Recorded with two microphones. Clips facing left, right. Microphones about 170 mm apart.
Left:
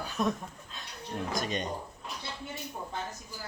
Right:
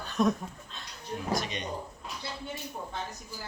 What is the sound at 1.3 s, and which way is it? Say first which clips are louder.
Speech: right 1 dB; 45° left (ahead or behind).